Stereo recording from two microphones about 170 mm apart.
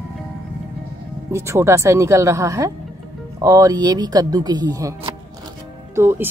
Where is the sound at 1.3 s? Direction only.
15° right (ahead or behind).